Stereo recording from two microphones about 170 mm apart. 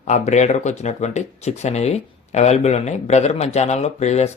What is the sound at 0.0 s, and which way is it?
Speech, 45° left (ahead or behind).